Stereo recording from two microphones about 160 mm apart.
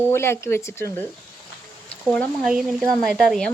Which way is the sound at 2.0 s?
5° left (ahead or behind).